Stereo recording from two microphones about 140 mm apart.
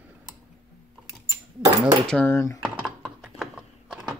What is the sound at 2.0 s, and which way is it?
Speech, 10° left (ahead or behind).